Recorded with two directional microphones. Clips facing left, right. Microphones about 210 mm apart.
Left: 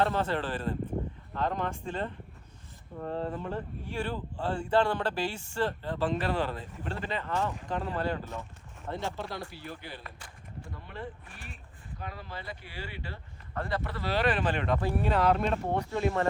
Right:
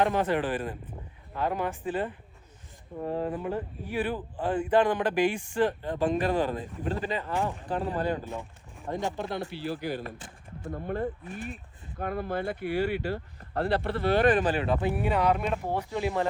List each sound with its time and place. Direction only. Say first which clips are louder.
0.0 s speech: right 3 dB; 15° right (ahead or behind)
3.0 s speech: right 3 dB; 10° right (ahead or behind)
7.7 s speech: right 3 dB; 35° right (ahead or behind)
7.9 s speech: right 3 dB; 15° right (ahead or behind)
9.7 s speech: right 11 dB; 40° right (ahead or behind)
13.9 s speech: right 6 dB; 55° right (ahead or behind)
14.5 s speech: right 2 dB; 5° right (ahead or behind)